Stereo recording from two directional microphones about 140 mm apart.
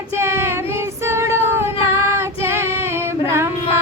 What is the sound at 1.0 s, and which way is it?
Female singing, 20° right (ahead or behind).